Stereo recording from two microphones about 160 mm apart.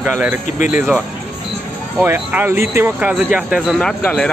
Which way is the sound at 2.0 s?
10° right (ahead or behind).